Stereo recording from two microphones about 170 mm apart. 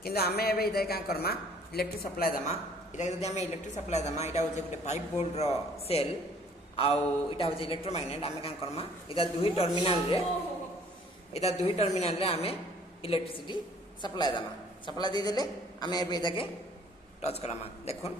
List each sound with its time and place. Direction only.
0.0 s a man's voice: 65° left (ahead or behind)
3.0 s a man's voice: 40° left (ahead or behind)
11.6 s a man's voice: 40° left (ahead or behind)
17.2 s a man's voice: 40° left (ahead or behind)